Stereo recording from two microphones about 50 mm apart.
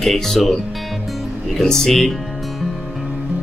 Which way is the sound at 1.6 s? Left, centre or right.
Centre.